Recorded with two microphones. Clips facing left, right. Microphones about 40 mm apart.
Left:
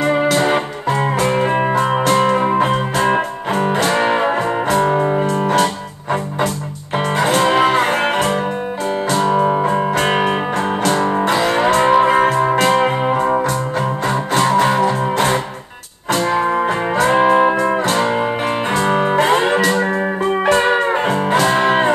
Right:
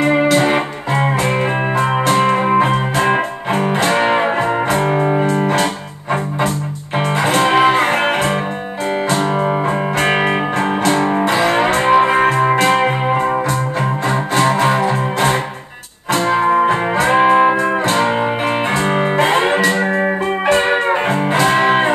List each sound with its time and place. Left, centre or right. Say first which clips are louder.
0.0 s music: right 2 dB; centre
1.8 s music: even; centre
2.1 s music: even; right
3.8 s music: right 3 dB; centre
7.2 s music: right 1 dB; centre
16.1 s music: right 2 dB; centre